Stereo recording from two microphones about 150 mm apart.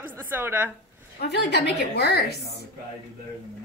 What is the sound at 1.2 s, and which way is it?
A woman's voice, 90° left.